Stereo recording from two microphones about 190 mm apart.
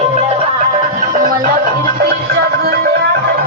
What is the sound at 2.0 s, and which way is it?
Music, 55° right (ahead or behind).